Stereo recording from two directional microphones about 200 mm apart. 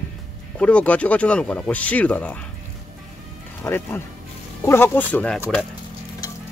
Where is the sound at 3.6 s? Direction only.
10° left (ahead or behind).